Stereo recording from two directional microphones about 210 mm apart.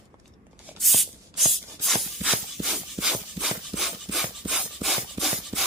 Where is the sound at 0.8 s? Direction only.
Centre (ahead or behind).